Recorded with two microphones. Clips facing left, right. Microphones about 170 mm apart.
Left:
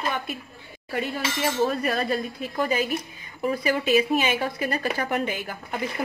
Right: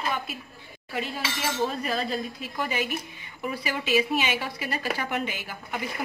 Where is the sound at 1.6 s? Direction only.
60° left (ahead or behind).